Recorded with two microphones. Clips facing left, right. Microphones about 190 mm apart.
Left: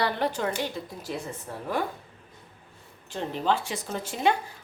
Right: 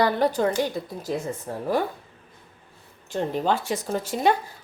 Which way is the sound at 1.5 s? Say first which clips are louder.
Right 6 dB; 40° right (ahead or behind).